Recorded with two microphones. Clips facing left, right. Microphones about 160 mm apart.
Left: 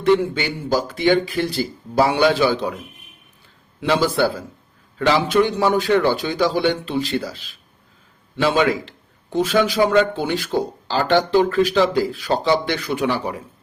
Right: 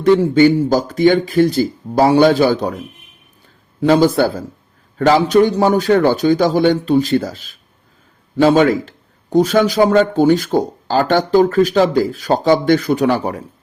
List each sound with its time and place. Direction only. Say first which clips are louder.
0.0 s a man's voice: right 7 dB; 40° right (ahead or behind)
3.8 s a man's voice: right 6 dB; 45° right (ahead or behind)